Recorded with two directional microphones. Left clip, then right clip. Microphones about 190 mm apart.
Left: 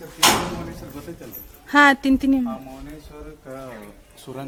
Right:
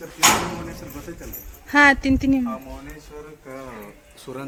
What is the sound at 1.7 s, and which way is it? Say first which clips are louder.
Speech: even; 10° left (ahead or behind).